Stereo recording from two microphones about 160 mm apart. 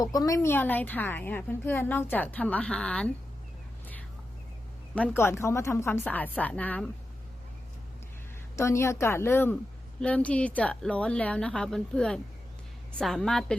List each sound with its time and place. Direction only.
0.0 s a woman's voice: 25° left (ahead or behind); by 3.1 s 5° left (ahead or behind)
4.9 s a woman's voice: 10° left (ahead or behind)
8.5 s a woman's voice: 15° left (ahead or behind)